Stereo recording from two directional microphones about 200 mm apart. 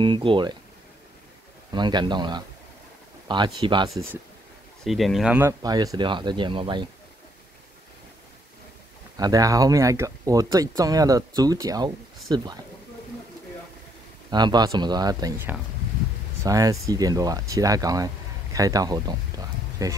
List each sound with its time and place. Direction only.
0.0 s speech: 25° right (ahead or behind)
1.7 s speech: 20° right (ahead or behind)
4.8 s speech: centre (ahead or behind); by 6.9 s 25° right (ahead or behind)
9.1 s speech: 20° right (ahead or behind)
14.3 s speech: 20° right (ahead or behind)